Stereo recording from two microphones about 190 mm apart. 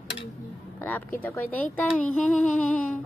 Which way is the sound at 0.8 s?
10° left (ahead or behind).